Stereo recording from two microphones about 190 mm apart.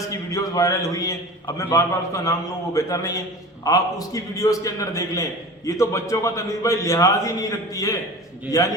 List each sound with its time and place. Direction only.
0.3 s a man's voice: 15° left (ahead or behind)